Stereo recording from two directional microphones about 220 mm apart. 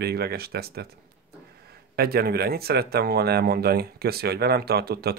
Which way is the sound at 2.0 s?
45° right (ahead or behind).